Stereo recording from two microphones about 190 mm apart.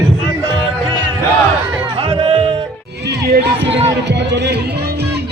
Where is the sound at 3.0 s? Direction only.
60° right (ahead or behind).